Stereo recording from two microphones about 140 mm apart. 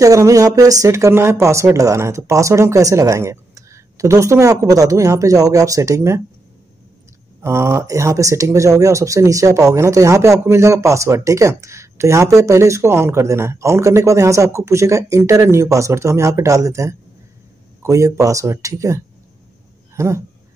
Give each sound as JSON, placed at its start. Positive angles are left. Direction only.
{"t": 0.0, "sound": "speech", "side_deg": -25}
{"t": 7.4, "sound": "speech", "side_deg": -20}